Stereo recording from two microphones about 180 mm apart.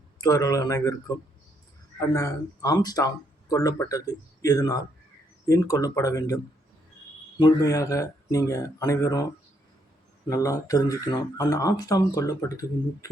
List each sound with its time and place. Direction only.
0.2 s speech: 20° left (ahead or behind)
10.2 s speech: 15° left (ahead or behind)